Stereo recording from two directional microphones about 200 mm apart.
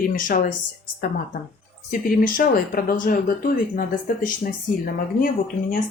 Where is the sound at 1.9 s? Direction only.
45° left (ahead or behind).